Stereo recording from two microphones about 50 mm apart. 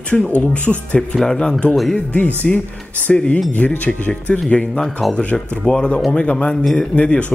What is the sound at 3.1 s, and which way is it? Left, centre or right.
Speech, left.